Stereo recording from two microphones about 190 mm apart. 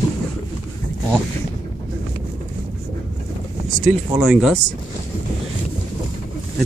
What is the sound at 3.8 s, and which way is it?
Speech, 5° right (ahead or behind).